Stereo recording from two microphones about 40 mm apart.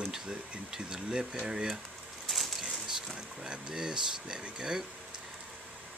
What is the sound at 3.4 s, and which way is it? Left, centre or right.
Speech, centre.